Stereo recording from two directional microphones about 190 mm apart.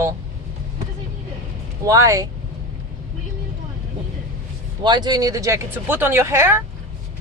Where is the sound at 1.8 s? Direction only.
15° right (ahead or behind).